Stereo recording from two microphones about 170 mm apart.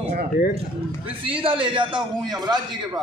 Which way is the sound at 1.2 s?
30° right (ahead or behind).